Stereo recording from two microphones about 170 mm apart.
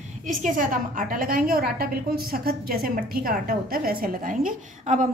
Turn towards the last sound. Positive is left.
turn(degrees=-50)  # may be behind; listen again after turning